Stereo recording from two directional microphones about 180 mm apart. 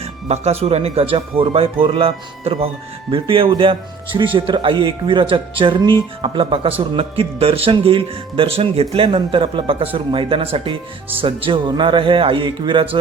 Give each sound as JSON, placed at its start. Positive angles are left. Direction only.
{"t": 0.0, "sound": "speech", "side_deg": -35}